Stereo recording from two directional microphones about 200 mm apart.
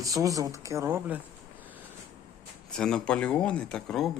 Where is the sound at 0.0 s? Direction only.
15° right (ahead or behind).